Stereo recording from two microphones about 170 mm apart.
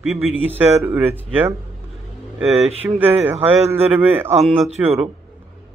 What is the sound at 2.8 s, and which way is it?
Speech, 10° right (ahead or behind).